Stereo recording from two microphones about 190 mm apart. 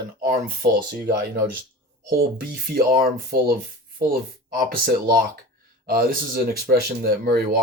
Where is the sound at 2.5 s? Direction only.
55° right (ahead or behind).